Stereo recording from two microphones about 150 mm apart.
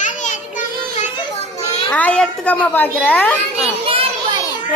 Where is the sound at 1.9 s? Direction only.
10° left (ahead or behind).